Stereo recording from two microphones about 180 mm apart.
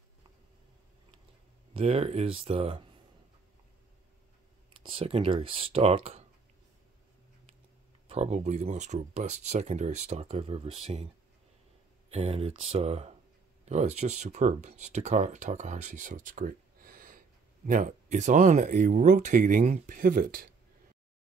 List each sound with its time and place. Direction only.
1.7 s speech: 35° right (ahead or behind)
4.8 s speech: 30° right (ahead or behind)
8.1 s speech: 35° right (ahead or behind)
12.1 s speech: 35° right (ahead or behind); by 20.4 s 55° right (ahead or behind)